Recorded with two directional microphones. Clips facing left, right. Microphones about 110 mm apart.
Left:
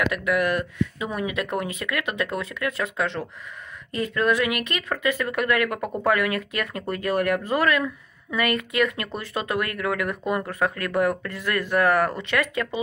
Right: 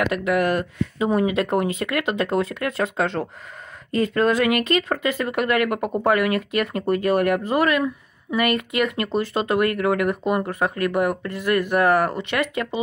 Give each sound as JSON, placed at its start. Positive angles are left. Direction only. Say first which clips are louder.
{"t": 0.0, "sound": "speech", "louder": "right 3 dB", "side_deg": -30}